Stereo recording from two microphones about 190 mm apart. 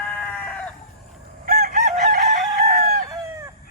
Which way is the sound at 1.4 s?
50° right (ahead or behind).